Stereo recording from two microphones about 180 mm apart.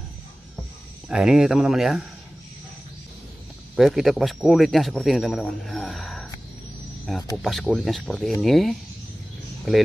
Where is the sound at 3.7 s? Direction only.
Centre (ahead or behind).